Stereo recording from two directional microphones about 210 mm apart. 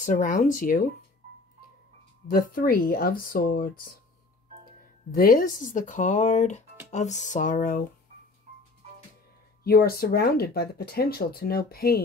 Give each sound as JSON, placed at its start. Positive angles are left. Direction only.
{"t": 0.0, "sound": "speech", "side_deg": 40}
{"t": 2.2, "sound": "speech", "side_deg": 45}
{"t": 5.1, "sound": "speech", "side_deg": 45}
{"t": 9.6, "sound": "speech", "side_deg": 45}